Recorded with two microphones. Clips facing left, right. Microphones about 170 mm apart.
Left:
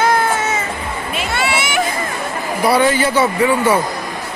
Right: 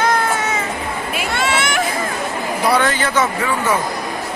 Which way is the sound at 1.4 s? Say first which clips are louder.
Left 1 dB; 10° left (ahead or behind).